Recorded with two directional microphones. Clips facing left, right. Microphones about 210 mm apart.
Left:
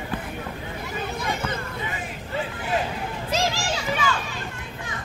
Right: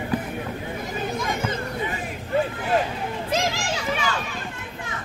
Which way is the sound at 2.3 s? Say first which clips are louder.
Right 7 dB; 50° right (ahead or behind).